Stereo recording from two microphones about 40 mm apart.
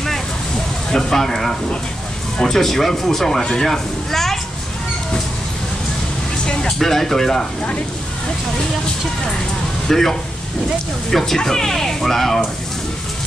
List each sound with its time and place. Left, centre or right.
0.9 s speech: centre
6.4 s vehicle: centre
6.8 s speech: centre
9.8 s speech: centre